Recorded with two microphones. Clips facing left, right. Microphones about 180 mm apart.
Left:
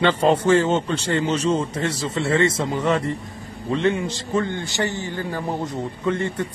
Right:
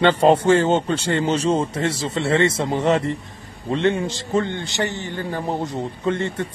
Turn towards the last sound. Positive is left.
turn(degrees=-30)  # may be behind; listen again after turning